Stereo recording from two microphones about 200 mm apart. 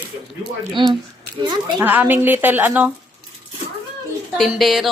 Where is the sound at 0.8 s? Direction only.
25° right (ahead or behind).